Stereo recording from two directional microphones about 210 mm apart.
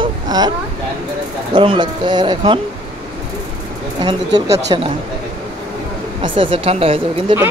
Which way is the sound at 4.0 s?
20° right (ahead or behind).